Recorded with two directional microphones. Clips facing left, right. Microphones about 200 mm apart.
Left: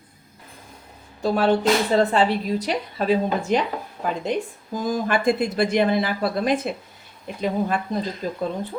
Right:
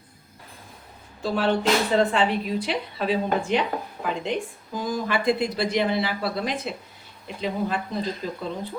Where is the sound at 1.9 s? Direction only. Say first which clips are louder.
Left 2 dB; 35° left (ahead or behind).